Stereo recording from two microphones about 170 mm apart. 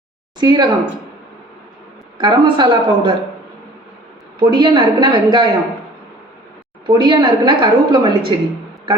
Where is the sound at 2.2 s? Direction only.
25° right (ahead or behind).